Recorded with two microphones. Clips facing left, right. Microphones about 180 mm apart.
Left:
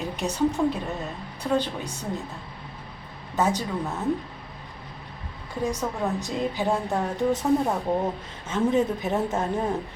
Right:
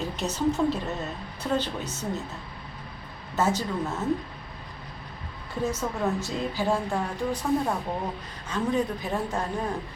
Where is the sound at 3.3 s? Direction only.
15° left (ahead or behind).